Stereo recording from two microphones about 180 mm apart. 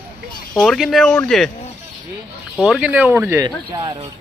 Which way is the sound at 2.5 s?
Centre (ahead or behind).